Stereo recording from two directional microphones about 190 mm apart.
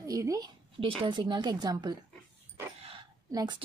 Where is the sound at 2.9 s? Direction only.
20° right (ahead or behind).